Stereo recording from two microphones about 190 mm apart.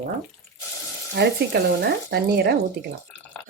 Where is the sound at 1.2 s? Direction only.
55° right (ahead or behind).